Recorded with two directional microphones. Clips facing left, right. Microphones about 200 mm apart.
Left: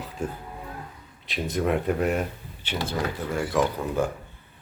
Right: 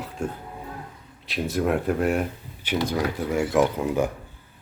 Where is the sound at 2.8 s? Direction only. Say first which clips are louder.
Right 2 dB; 15° right (ahead or behind).